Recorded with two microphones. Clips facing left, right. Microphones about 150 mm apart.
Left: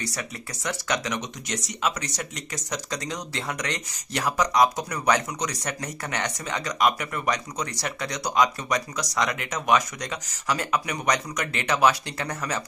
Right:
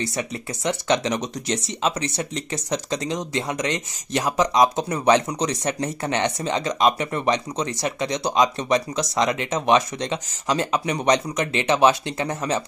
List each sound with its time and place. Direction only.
0.7 s speech: 25° right (ahead or behind)